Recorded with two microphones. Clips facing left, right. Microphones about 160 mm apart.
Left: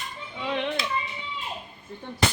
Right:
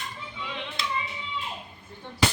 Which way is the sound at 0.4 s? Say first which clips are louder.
Left 10 dB; 60° left (ahead or behind).